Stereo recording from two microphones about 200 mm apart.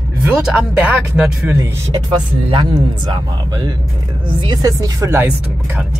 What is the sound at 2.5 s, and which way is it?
Speech, 20° right (ahead or behind).